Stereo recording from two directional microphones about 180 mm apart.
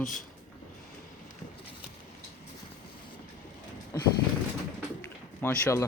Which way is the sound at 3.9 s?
15° left (ahead or behind).